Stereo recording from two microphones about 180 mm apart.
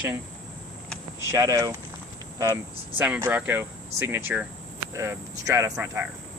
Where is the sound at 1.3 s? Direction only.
15° right (ahead or behind).